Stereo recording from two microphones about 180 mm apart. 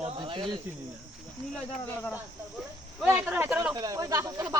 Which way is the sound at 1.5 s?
5° left (ahead or behind).